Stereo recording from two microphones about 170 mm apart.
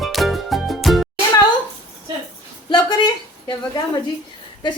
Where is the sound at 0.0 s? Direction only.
Centre (ahead or behind).